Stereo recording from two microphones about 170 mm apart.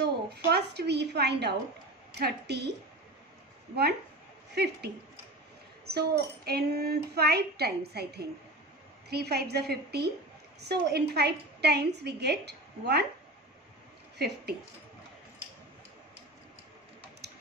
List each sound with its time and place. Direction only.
0.0 s a child's voice: 70° right (ahead or behind)
4.5 s a child's voice: 75° right (ahead or behind)
14.1 s a child's voice: 70° right (ahead or behind)
17.2 s tick-tock: 70° right (ahead or behind)